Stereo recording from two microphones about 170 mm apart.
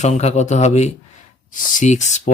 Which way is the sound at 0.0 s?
40° left (ahead or behind).